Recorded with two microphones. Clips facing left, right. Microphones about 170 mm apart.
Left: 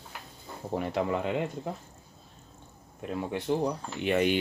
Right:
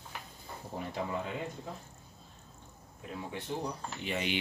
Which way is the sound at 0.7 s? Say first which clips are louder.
Left 7 dB; 75° left (ahead or behind).